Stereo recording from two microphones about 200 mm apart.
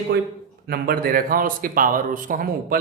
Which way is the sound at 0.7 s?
50° right (ahead or behind).